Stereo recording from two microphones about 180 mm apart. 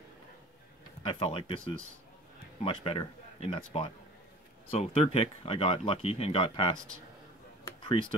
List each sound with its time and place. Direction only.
1.0 s speech: 30° left (ahead or behind)
2.6 s speech: 30° left (ahead or behind)
7.6 s a sound: 25° left (ahead or behind)